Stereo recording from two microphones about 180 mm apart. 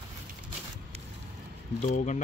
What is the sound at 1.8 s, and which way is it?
Speech, 40° left (ahead or behind).